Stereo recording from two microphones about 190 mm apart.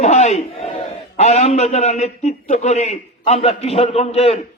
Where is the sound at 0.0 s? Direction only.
35° left (ahead or behind).